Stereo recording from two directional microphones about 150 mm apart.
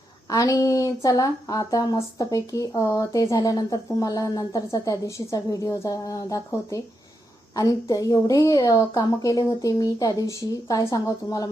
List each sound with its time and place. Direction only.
0.3 s speech: 25° left (ahead or behind)